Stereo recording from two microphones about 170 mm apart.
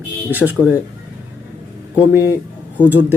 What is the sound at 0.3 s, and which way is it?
Speech, 10° right (ahead or behind).